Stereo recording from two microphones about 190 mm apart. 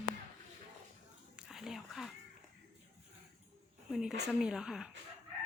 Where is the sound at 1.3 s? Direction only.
Centre (ahead or behind).